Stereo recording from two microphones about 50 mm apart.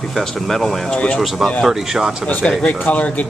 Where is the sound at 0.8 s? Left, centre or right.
Left.